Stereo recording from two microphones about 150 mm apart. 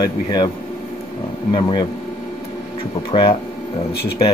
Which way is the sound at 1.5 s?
35° left (ahead or behind).